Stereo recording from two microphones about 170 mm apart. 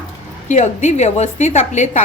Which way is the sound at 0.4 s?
45° left (ahead or behind).